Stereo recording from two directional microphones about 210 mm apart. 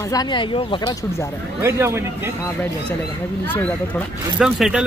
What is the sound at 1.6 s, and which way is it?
Speech, 15° right (ahead or behind).